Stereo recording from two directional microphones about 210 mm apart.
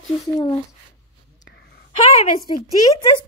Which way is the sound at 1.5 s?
55° left (ahead or behind).